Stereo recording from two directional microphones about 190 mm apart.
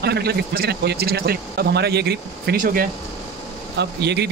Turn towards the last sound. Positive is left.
turn(degrees=-60)  # may be behind; listen again after turning